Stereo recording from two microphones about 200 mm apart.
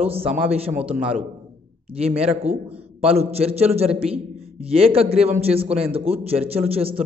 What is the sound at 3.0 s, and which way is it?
Speech, 30° right (ahead or behind).